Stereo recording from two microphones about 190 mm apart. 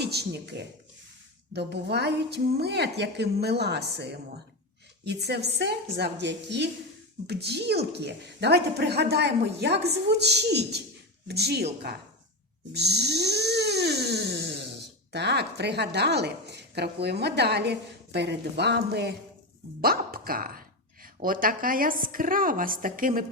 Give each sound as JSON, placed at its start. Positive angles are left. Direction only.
{"t": 0.0, "sound": "a woman's voice", "side_deg": -60}
{"t": 12.7, "sound": "cat", "side_deg": -60}
{"t": 19.8, "sound": "speech", "side_deg": -50}